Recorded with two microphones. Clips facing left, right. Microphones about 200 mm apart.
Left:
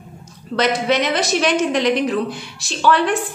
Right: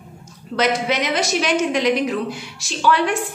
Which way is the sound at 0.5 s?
10° right (ahead or behind).